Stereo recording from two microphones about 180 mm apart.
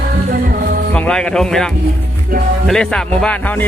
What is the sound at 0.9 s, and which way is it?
Speech, 5° left (ahead or behind).